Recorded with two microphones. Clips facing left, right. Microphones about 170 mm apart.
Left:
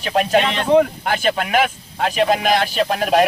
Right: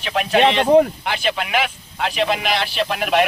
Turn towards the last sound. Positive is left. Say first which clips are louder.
# left 2 dB
turn(degrees=35)  # may be behind; listen again after turning